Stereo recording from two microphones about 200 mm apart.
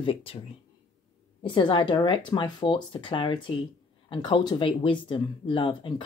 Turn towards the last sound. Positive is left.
turn(degrees=25)  # may be behind; listen again after turning